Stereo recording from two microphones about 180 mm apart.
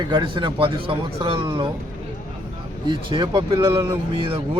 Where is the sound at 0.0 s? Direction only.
25° right (ahead or behind).